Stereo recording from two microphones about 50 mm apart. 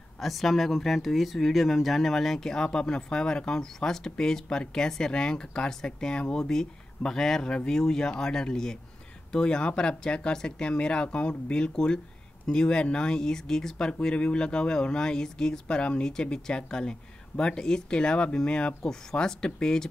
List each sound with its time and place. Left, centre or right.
0.2 s speech: centre